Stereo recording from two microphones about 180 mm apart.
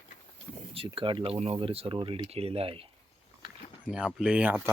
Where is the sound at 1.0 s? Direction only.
30° right (ahead or behind).